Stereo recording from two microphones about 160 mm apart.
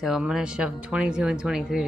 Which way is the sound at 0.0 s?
Centre (ahead or behind).